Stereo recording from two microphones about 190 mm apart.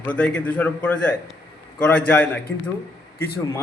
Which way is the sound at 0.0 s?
5° left (ahead or behind).